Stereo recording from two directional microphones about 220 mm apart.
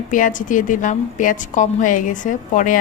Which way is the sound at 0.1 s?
35° left (ahead or behind).